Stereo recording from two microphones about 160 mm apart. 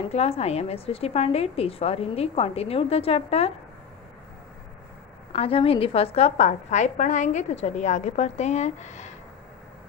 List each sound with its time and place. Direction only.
0.1 s a woman's voice: 40° left (ahead or behind)
5.3 s a woman's voice: 35° left (ahead or behind)